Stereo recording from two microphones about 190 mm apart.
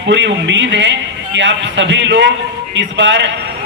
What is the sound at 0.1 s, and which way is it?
A man's voice, 70° right (ahead or behind).